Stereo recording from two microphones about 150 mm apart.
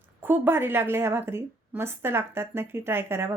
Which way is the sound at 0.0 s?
10° right (ahead or behind).